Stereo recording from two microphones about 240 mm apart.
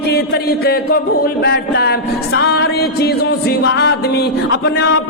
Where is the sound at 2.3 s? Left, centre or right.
Left.